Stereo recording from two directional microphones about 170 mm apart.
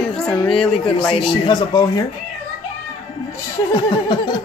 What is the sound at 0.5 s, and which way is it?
Speech, 5° left (ahead or behind).